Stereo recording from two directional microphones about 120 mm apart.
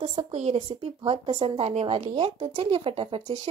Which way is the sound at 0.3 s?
65° right (ahead or behind).